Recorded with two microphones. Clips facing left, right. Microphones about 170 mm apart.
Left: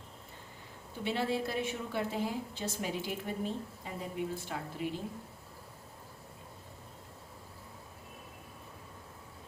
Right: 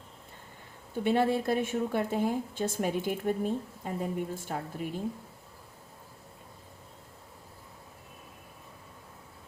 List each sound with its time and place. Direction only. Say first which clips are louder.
1.0 s a woman's voice: right 7 dB; 50° right (ahead or behind)